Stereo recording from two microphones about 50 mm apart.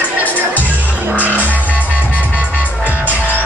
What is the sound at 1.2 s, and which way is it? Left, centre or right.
Music, right.